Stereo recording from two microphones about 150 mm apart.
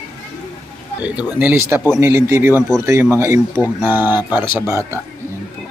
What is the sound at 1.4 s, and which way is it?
Speech, 10° right (ahead or behind).